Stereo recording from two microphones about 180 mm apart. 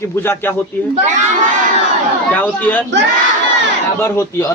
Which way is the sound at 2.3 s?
10° left (ahead or behind).